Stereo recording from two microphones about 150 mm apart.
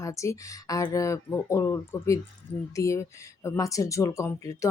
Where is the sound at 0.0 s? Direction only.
20° left (ahead or behind).